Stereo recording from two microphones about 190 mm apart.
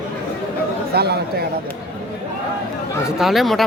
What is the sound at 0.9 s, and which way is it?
Speech, 55° right (ahead or behind).